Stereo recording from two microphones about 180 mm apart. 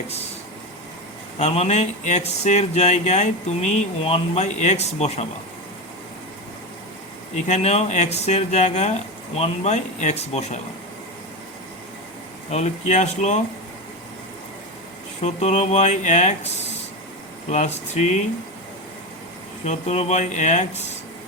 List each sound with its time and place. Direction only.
1.4 s speech: 35° left (ahead or behind)
7.3 s speech: 40° left (ahead or behind)
12.5 s speech: 40° left (ahead or behind)
15.2 s speech: 40° left (ahead or behind)
17.9 s speech: 40° left (ahead or behind)
19.6 s speech: 40° left (ahead or behind)